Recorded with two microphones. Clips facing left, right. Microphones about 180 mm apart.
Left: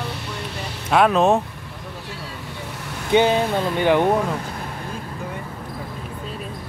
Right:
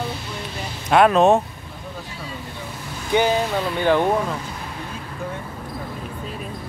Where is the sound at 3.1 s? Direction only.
20° left (ahead or behind).